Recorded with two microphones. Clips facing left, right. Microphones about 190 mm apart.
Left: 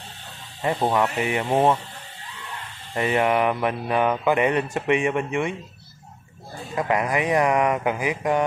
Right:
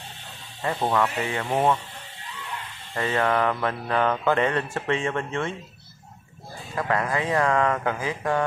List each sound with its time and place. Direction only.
0.6 s speech: 20° left (ahead or behind)
2.9 s mantra: 15° left (ahead or behind)
6.7 s mantra: 15° left (ahead or behind)